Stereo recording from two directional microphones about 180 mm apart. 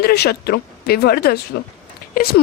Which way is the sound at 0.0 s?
60° left (ahead or behind).